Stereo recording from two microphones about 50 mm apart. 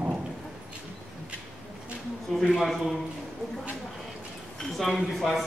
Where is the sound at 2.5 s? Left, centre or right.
Centre.